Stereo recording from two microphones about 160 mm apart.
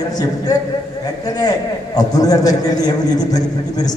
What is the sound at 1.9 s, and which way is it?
A man's voice, 25° left (ahead or behind).